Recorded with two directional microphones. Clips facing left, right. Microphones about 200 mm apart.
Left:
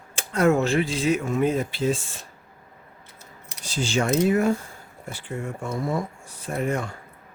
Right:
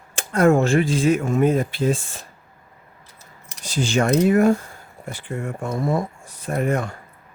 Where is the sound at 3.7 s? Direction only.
60° right (ahead or behind).